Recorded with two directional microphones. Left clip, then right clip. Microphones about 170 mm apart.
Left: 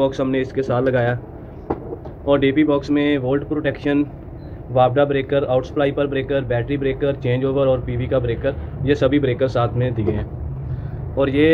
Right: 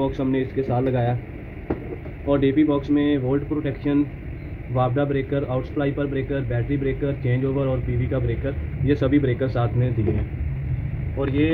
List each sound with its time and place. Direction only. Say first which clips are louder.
0.0 s a man's voice: left 5 dB; 10° right (ahead or behind)
2.2 s a man's voice: left 3 dB; 5° right (ahead or behind)
11.1 s speech: left 7 dB; 5° left (ahead or behind)